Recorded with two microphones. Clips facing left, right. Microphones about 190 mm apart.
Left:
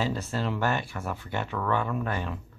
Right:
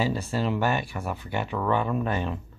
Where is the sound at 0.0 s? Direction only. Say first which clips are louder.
Right 3 dB; 10° right (ahead or behind).